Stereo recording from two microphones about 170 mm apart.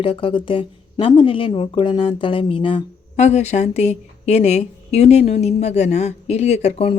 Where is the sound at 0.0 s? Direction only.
30° left (ahead or behind).